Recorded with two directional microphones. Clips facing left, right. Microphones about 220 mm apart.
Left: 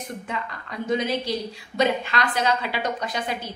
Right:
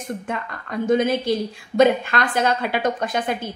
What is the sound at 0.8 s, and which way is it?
A woman's voice, 50° right (ahead or behind).